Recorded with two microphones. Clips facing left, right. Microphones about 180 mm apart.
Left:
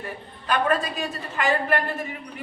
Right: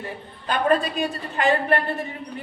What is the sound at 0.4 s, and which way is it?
A woman's voice, 30° right (ahead or behind).